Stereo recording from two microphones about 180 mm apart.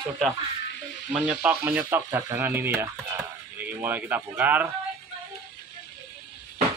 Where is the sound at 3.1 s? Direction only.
10° right (ahead or behind).